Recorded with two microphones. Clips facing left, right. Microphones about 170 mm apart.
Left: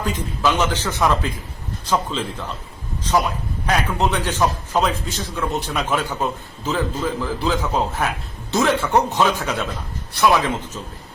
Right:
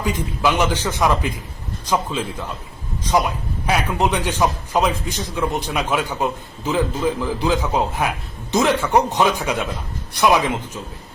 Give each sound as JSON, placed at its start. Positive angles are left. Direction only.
{"t": 0.0, "sound": "a man's voice", "side_deg": -10}